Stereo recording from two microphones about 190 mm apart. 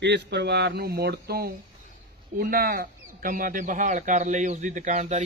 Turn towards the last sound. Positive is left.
turn(degrees=-40)  # may be behind; listen again after turning